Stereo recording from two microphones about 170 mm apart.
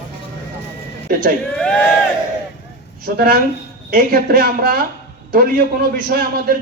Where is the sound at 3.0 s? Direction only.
60° right (ahead or behind).